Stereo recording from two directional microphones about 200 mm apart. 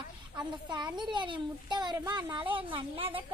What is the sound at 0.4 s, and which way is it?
A child's voice, 20° right (ahead or behind).